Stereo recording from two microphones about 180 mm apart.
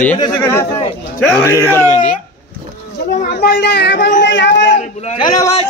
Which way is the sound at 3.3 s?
65° left (ahead or behind).